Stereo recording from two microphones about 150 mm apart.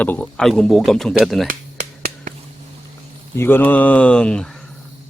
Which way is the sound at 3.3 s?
15° left (ahead or behind).